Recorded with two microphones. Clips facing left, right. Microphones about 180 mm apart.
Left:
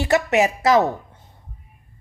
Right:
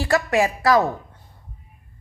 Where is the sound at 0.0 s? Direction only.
20° left (ahead or behind).